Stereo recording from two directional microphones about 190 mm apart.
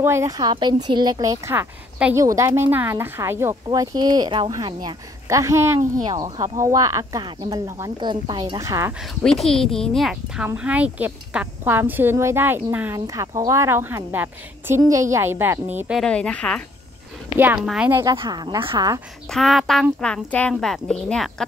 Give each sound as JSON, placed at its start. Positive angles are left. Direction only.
{"t": 0.0, "sound": "speech", "side_deg": -15}
{"t": 9.2, "sound": "a woman's voice", "side_deg": 5}
{"t": 16.0, "sound": "a woman's voice", "side_deg": 5}
{"t": 17.4, "sound": "speech", "side_deg": -5}
{"t": 18.0, "sound": "speech", "side_deg": -20}
{"t": 19.3, "sound": "a woman's voice", "side_deg": 0}